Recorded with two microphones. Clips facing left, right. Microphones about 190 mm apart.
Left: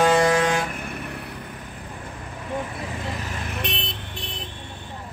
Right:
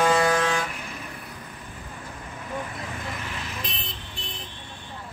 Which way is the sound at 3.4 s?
65° left (ahead or behind).